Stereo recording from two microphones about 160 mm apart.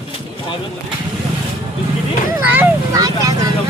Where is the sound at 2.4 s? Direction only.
10° right (ahead or behind).